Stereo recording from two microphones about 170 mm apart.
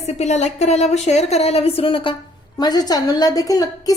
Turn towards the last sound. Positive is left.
turn(degrees=20)  # may be behind; listen again after turning